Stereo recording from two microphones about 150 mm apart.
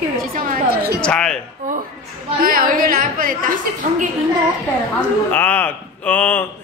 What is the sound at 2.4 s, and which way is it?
Speech, 70° right (ahead or behind).